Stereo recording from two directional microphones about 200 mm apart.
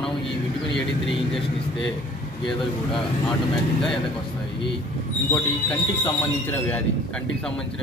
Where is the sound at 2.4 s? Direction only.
Centre (ahead or behind).